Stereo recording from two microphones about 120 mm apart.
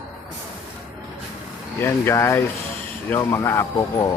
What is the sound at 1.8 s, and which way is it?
Speech, 20° left (ahead or behind).